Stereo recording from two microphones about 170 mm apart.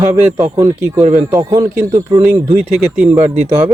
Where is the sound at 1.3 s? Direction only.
20° right (ahead or behind).